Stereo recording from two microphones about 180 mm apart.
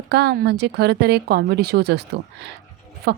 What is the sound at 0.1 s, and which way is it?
A woman's voice, 65° right (ahead or behind).